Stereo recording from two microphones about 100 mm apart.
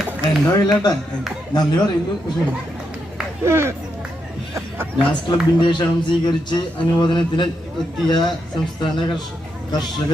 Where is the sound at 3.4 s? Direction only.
25° right (ahead or behind).